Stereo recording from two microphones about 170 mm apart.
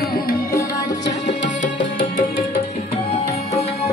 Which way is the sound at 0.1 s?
60° left (ahead or behind).